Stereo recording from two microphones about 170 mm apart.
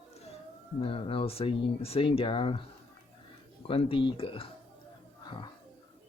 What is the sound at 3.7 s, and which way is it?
Speech, 35° left (ahead or behind).